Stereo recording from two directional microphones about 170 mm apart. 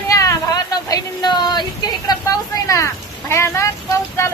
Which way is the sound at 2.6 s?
15° left (ahead or behind).